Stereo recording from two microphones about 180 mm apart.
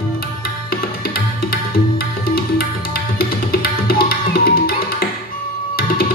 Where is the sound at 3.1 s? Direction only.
55° left (ahead or behind).